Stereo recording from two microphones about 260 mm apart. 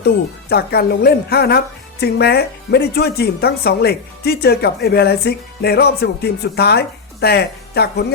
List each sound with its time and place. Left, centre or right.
0.5 s a woman's voice: left